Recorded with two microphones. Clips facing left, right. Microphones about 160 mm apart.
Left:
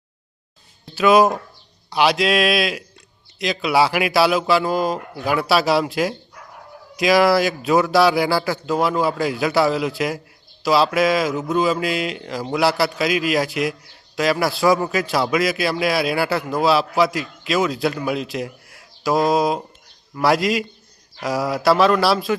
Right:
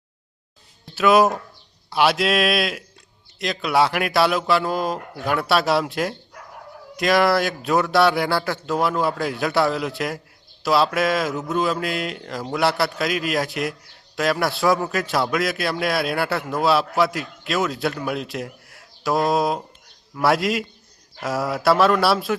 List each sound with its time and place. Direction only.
0.9 s speech: centre (ahead or behind)